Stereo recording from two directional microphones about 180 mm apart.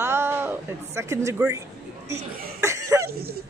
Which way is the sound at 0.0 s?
15° right (ahead or behind).